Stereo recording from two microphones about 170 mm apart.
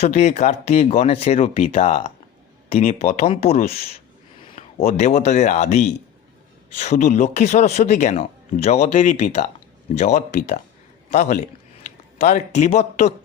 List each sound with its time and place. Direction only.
0.0 s a man's voice: 40° left (ahead or behind)